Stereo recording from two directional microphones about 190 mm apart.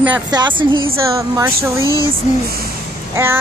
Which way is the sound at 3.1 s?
10° right (ahead or behind).